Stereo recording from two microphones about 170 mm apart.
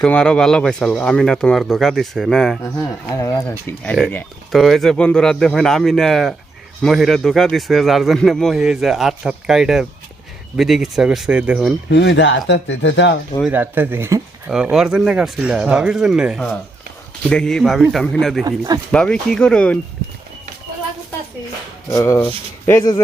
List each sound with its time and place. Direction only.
0.0 s a man's voice: 5° left (ahead or behind)
2.6 s speech: 20° left (ahead or behind)
4.0 s a man's voice: centre (ahead or behind)
11.9 s speech: 90° left
13.4 s a man's voice: 10° right (ahead or behind)
18.4 s speech: 20° right (ahead or behind)
18.9 s a man's voice: 5° left (ahead or behind)
21.8 s speech: 15° left (ahead or behind)